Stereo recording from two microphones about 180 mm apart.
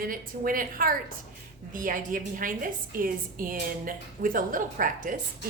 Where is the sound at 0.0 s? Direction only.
50° right (ahead or behind).